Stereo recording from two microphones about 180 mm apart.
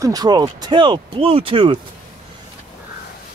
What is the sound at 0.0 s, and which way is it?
Speech, 20° right (ahead or behind).